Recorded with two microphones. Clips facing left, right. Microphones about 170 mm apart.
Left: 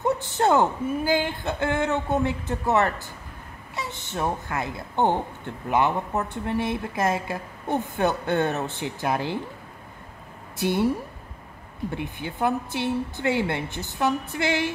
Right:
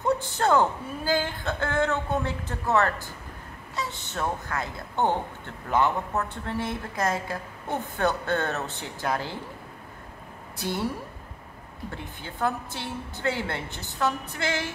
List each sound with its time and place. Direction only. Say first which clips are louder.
0.3 s speech: left 3 dB; 20° left (ahead or behind)
3.7 s a sound: even; 20° left (ahead or behind)
4.1 s speech: left 4 dB; 20° left (ahead or behind)
10.6 s speech: left 6 dB; 20° left (ahead or behind)
11.9 s speech: left 6 dB; 15° left (ahead or behind)